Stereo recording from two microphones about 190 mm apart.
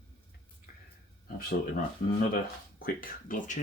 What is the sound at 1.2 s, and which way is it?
Speech, 50° left (ahead or behind).